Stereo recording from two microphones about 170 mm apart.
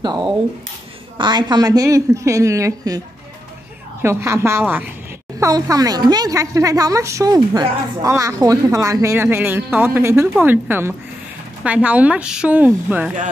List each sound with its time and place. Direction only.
1.1 s a woman's voice: 25° right (ahead or behind)
4.0 s a woman's voice: 15° right (ahead or behind)